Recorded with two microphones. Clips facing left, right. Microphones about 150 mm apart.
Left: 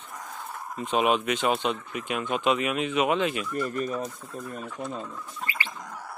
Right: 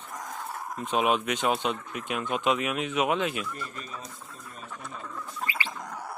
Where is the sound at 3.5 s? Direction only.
50° left (ahead or behind).